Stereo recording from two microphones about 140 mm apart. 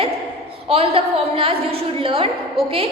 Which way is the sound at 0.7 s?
45° right (ahead or behind).